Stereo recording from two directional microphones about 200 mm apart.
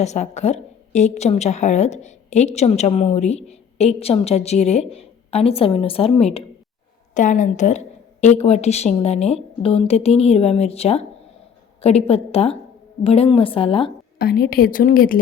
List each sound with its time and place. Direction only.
0.0 s a woman's voice: 35° left (ahead or behind)
14.2 s a woman's voice: 50° left (ahead or behind)